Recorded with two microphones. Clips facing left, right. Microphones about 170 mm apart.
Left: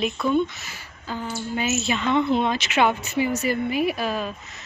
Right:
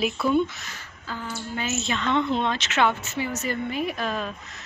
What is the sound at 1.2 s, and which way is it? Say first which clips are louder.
A woman's voice: left 4 dB; 20° left (ahead or behind).